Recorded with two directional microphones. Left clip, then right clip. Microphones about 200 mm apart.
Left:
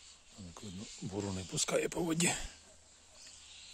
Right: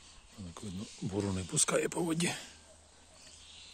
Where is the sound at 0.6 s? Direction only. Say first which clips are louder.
Right 3 dB; 5° left (ahead or behind).